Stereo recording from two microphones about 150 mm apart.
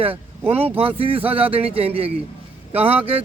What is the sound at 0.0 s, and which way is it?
Speech, 40° right (ahead or behind).